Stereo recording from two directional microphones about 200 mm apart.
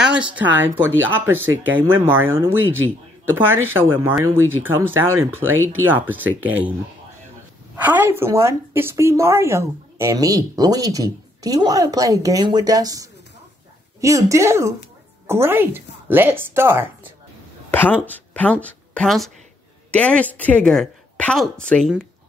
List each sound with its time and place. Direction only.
0.0 s a woman's voice: 5° right (ahead or behind)
7.7 s a woman's voice: 10° right (ahead or behind)
17.6 s a woman's voice: 10° left (ahead or behind)